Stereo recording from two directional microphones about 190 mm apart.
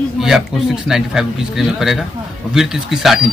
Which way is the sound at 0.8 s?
Centre (ahead or behind).